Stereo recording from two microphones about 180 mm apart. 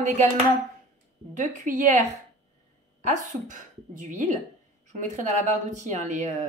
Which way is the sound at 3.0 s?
45° right (ahead or behind).